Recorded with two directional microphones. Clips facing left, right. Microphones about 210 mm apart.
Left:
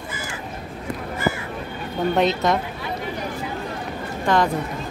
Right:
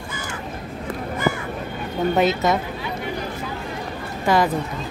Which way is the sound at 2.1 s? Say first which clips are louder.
Even; 5° right (ahead or behind).